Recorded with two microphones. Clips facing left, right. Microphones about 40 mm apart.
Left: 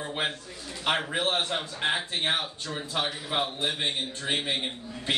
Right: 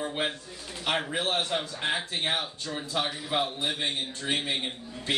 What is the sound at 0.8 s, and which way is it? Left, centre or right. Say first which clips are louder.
Speech: left 2 dB; centre.